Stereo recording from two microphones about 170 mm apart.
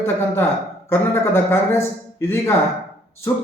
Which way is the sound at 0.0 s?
15° left (ahead or behind).